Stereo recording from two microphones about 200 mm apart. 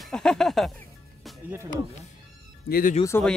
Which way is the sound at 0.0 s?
5° left (ahead or behind).